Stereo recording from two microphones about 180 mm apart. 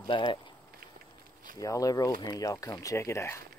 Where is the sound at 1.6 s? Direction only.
20° left (ahead or behind).